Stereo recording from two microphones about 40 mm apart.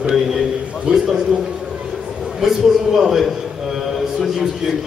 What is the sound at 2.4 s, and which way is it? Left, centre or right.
Speech, centre.